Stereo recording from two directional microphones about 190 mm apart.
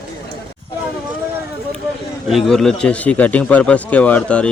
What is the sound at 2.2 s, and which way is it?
Speech, centre (ahead or behind).